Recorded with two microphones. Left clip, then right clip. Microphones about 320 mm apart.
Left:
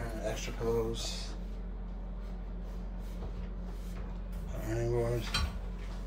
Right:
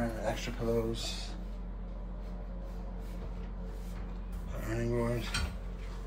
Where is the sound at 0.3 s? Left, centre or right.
Left.